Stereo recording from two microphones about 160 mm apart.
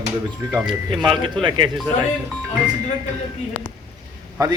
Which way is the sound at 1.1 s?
30° right (ahead or behind).